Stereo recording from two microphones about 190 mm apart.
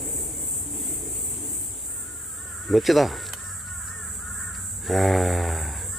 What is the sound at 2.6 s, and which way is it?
Caw, centre (ahead or behind).